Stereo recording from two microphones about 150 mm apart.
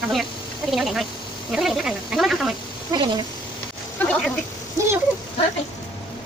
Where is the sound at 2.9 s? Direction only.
30° right (ahead or behind).